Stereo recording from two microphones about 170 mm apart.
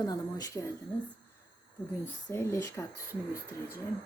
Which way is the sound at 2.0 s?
15° left (ahead or behind).